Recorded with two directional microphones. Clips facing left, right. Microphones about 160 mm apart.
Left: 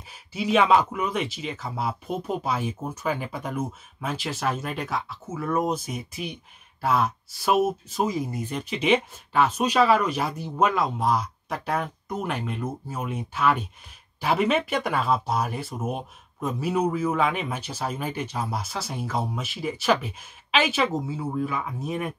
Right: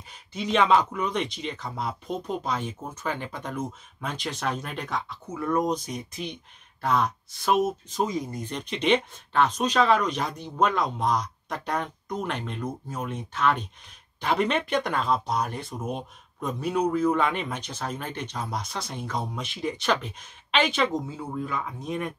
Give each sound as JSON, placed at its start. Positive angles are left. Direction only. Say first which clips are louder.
{"t": 0.1, "sound": "speech", "louder": "left 3 dB", "side_deg": 5}